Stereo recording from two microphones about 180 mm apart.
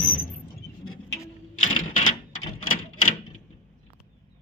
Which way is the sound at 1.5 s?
45° left (ahead or behind).